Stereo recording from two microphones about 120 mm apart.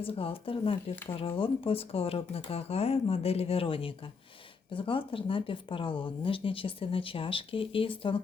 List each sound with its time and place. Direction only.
0.0 s speech: 50° left (ahead or behind)